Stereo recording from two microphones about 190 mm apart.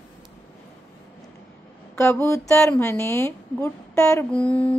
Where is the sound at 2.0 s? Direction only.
15° left (ahead or behind).